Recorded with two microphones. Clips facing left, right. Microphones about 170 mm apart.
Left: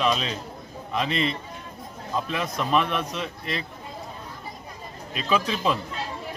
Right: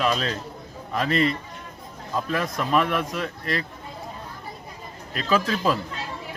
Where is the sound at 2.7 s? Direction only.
20° left (ahead or behind).